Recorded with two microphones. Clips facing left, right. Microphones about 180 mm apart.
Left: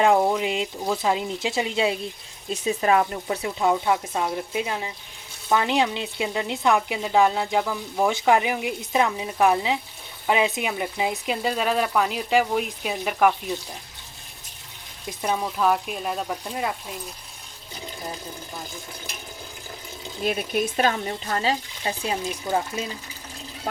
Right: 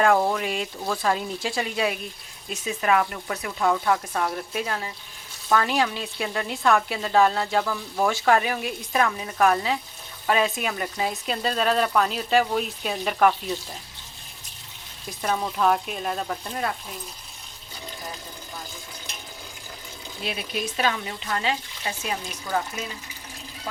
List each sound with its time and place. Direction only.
0.0 s speech: 20° left (ahead or behind)
15.0 s speech: 15° left (ahead or behind)
15.4 s speech: 5° left (ahead or behind)
20.2 s speech: 50° left (ahead or behind); by 22.9 s 25° left (ahead or behind)